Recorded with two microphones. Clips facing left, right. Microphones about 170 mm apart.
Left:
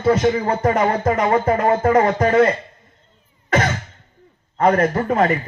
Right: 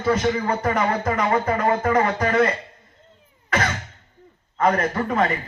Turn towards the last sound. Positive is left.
turn(degrees=35)  # may be behind; listen again after turning